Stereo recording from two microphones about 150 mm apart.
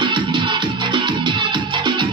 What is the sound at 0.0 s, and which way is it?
Music, 30° right (ahead or behind).